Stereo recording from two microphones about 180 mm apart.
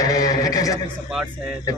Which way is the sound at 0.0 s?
20° left (ahead or behind).